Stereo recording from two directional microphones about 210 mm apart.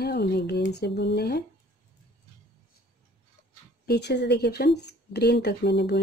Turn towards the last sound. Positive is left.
turn(degrees=50)  # may be behind; listen again after turning